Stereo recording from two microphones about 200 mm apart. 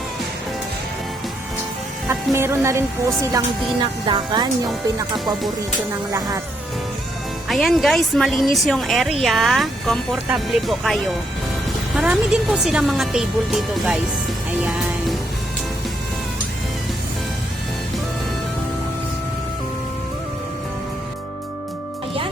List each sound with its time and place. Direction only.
2.0 s speech: 15° right (ahead or behind)
4.0 s speech: 20° right (ahead or behind)
6.1 s speech: 15° right (ahead or behind)
7.4 s speech: centre (ahead or behind)